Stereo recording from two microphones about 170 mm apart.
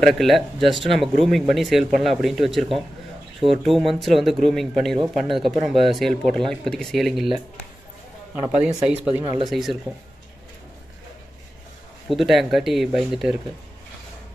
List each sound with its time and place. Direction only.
0.0 s speech: centre (ahead or behind)
8.4 s speech: 5° right (ahead or behind)
9.2 s speech: 25° right (ahead or behind)
9.5 s speech: centre (ahead or behind)
12.1 s speech: centre (ahead or behind)